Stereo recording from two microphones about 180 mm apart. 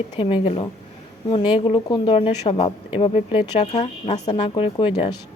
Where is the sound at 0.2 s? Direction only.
30° left (ahead or behind).